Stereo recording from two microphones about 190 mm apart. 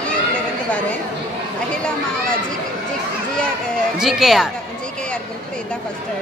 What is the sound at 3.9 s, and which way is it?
Speech, centre (ahead or behind).